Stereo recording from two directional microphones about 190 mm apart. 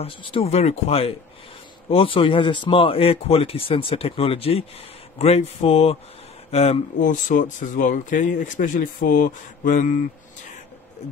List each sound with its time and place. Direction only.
0.0 s speech: 30° left (ahead or behind)